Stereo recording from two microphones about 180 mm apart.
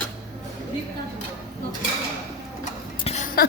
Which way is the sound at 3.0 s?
40° left (ahead or behind).